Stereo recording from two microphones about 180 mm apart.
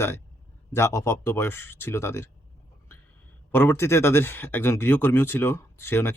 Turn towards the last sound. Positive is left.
turn(degrees=15)  # may be behind; listen again after turning